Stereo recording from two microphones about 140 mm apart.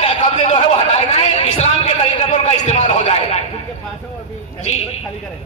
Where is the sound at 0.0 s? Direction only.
50° left (ahead or behind).